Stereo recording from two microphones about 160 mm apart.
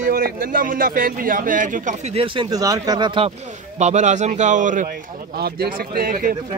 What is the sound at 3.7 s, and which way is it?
A man's voice, 45° right (ahead or behind).